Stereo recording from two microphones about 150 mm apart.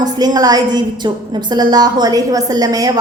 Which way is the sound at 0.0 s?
25° right (ahead or behind).